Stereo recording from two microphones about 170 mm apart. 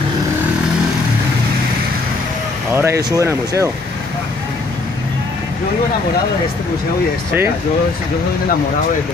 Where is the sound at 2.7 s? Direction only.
15° right (ahead or behind).